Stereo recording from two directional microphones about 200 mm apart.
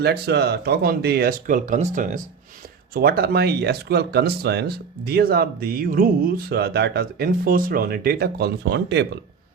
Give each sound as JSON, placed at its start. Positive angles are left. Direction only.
{"t": 0.0, "sound": "speech", "side_deg": -55}
{"t": 2.9, "sound": "speech", "side_deg": -50}